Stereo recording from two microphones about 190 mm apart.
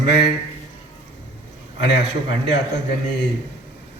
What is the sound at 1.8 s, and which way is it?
Speech, 65° left (ahead or behind).